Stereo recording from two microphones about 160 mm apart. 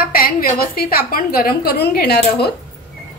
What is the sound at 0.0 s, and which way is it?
A woman's voice, 65° left (ahead or behind).